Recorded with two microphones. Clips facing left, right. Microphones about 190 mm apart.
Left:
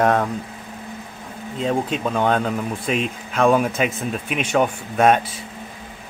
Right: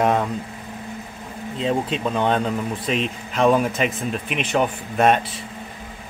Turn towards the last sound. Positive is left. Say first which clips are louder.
# left 1 dB
turn(degrees=0)  # may be behind; listen again after turning